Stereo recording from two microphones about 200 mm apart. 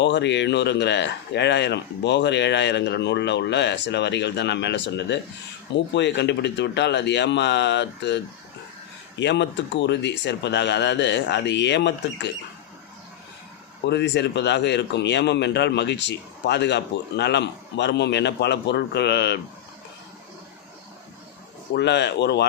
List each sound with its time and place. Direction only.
0.0 s speech: 60° left (ahead or behind)
13.8 s speech: 60° left (ahead or behind)
21.8 s speech: 60° left (ahead or behind)